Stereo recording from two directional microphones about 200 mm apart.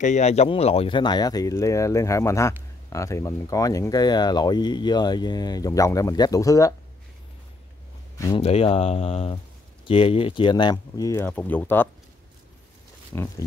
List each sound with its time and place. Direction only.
0.0 s speech: 35° left (ahead or behind); by 6.7 s 15° left (ahead or behind)
8.4 s speech: 30° left (ahead or behind); by 11.9 s 10° left (ahead or behind)
13.1 s speech: 10° left (ahead or behind)